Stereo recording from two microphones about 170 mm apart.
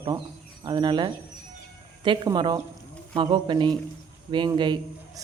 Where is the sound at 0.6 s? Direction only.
25° right (ahead or behind).